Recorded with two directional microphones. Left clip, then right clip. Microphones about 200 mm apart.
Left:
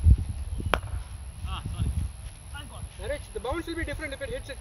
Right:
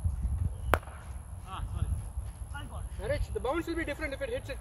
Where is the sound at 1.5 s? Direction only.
Centre (ahead or behind).